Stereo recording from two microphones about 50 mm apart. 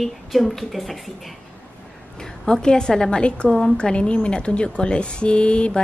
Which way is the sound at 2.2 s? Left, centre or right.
Centre.